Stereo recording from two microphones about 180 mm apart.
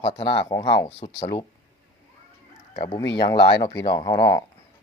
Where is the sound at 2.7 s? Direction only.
40° left (ahead or behind).